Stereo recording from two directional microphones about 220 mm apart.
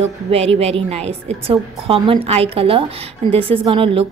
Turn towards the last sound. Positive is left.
turn(degrees=-25)  # may be behind; listen again after turning